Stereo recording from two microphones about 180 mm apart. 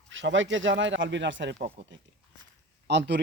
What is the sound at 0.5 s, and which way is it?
Speech, 90° right.